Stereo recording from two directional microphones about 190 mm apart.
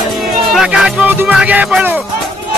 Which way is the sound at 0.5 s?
5° right (ahead or behind).